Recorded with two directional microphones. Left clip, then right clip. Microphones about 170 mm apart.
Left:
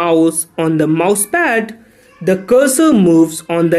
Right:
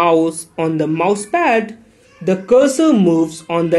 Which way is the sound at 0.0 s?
15° left (ahead or behind).